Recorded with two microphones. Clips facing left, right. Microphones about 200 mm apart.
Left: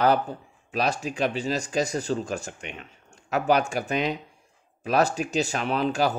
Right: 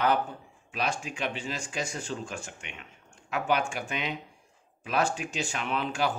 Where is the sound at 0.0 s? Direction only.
35° left (ahead or behind).